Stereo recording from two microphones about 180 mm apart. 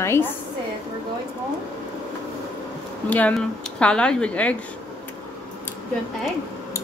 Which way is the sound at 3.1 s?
5° left (ahead or behind).